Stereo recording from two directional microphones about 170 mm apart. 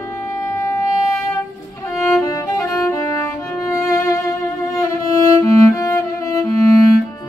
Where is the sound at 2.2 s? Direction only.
20° left (ahead or behind).